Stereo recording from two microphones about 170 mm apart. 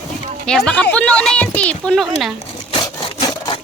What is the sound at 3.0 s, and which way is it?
Wood, 20° left (ahead or behind).